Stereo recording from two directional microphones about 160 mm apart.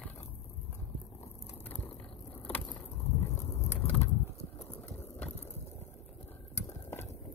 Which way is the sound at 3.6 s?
15° left (ahead or behind).